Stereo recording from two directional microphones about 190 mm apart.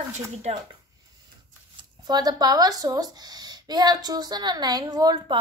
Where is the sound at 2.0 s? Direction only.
20° right (ahead or behind).